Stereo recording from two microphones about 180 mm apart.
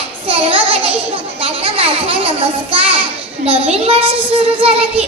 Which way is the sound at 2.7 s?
30° right (ahead or behind).